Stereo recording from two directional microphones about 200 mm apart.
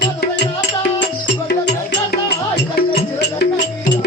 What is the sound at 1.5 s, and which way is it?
Music, 55° left (ahead or behind).